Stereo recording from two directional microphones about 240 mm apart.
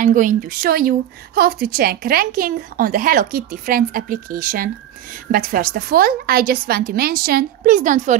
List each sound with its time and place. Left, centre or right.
0.0 s speech: right